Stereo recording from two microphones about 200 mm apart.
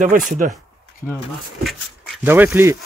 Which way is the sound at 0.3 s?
40° right (ahead or behind).